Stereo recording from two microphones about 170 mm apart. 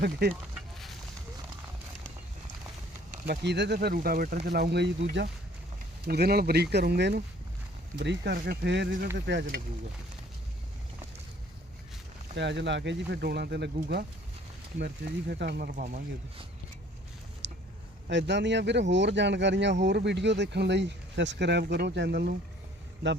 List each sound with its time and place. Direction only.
0.0 s speech: 75° right (ahead or behind)
3.2 s speech: 85° right; by 4.4 s 60° right (ahead or behind)
4.4 s speech: 70° right (ahead or behind)
6.1 s speech: 65° right (ahead or behind)
7.9 s speech: 90° right
12.4 s speech: 90° right
14.8 s speech: 70° right (ahead or behind)
17.4 s a sound: 90° right
18.1 s speech: 90° right